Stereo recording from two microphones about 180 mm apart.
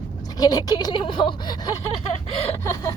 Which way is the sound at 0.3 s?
20° left (ahead or behind).